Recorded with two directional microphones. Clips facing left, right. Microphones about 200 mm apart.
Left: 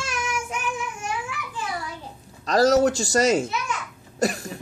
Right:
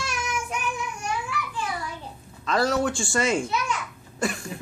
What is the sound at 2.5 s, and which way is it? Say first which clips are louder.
Speech: left 6 dB; 40° left (ahead or behind).